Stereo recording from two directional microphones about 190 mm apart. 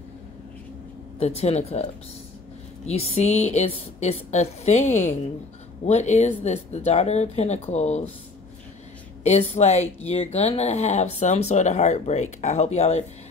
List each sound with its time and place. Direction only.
1.2 s speech: 35° left (ahead or behind)
2.9 s speech: 35° left (ahead or behind)
9.2 s speech: 35° left (ahead or behind)